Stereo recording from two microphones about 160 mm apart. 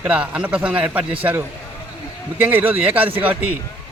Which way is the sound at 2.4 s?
10° right (ahead or behind).